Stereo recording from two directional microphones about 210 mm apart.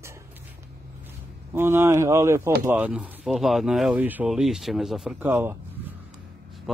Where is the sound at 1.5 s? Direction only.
10° right (ahead or behind).